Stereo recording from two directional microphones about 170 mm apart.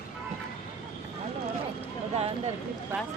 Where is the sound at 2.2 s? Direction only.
40° right (ahead or behind).